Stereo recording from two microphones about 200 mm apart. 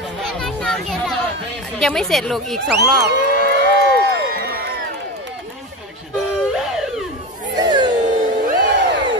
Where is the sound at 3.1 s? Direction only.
55° right (ahead or behind).